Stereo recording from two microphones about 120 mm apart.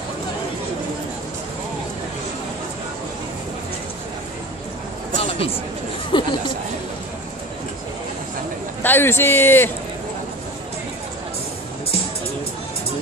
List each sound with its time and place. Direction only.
5.2 s a sound: 50° left (ahead or behind)
6.1 s chatter: 45° left (ahead or behind)
8.8 s a man's voice: 20° left (ahead or behind)